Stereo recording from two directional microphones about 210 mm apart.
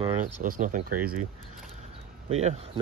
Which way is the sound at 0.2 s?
40° right (ahead or behind).